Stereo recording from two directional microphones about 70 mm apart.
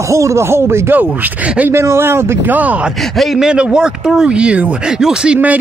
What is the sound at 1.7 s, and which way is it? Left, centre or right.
Speech, right.